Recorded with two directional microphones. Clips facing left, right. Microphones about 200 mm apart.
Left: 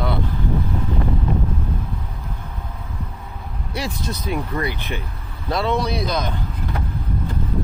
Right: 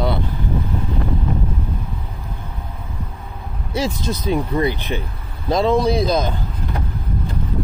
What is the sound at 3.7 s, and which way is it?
Speech, 90° right.